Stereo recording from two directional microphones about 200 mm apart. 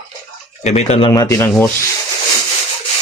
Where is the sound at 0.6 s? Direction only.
35° left (ahead or behind).